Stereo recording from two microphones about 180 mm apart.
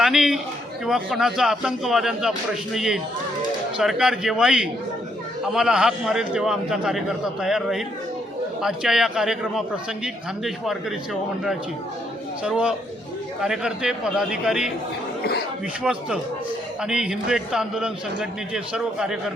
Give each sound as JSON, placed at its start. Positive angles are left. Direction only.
{"t": 0.0, "sound": "a man's voice", "side_deg": 0}
{"t": 15.2, "sound": "speech", "side_deg": 60}
{"t": 15.8, "sound": "a man's voice", "side_deg": -5}